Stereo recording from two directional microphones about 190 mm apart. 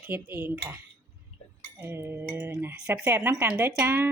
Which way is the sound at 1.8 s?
10° right (ahead or behind).